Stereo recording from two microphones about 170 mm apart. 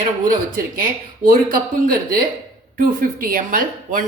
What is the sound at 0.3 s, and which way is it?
Speech, 55° right (ahead or behind).